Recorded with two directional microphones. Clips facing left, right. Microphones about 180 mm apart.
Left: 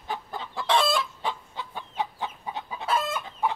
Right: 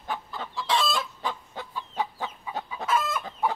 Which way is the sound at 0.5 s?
55° left (ahead or behind).